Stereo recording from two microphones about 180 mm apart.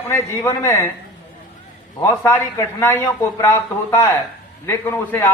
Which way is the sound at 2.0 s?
15° left (ahead or behind).